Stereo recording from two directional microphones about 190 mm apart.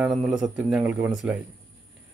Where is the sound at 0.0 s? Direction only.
5° right (ahead or behind).